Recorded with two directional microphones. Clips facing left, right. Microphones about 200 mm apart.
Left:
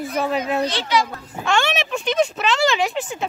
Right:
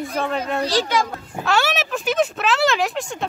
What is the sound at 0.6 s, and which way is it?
Speech, 40° right (ahead or behind).